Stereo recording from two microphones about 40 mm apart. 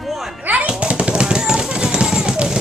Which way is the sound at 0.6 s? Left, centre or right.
Right.